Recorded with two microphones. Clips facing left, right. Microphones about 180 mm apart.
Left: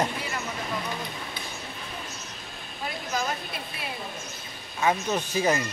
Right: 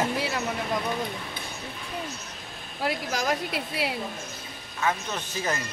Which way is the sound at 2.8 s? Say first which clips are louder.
Right 3 dB; 90° right.